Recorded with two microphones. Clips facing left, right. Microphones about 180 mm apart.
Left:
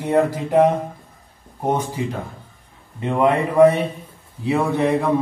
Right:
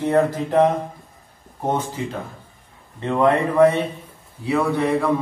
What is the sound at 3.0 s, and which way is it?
A man's voice, 15° left (ahead or behind).